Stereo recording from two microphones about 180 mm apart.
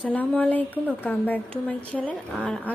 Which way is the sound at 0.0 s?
10° left (ahead or behind).